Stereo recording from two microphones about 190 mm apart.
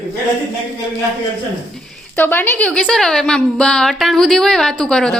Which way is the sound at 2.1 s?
10° left (ahead or behind).